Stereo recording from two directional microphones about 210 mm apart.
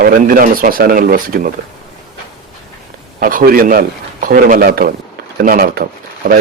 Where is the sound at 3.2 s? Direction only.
40° right (ahead or behind).